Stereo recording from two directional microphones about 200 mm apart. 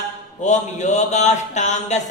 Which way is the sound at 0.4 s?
35° left (ahead or behind).